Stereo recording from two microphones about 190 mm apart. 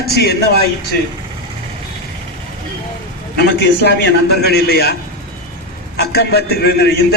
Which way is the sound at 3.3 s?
60° left (ahead or behind).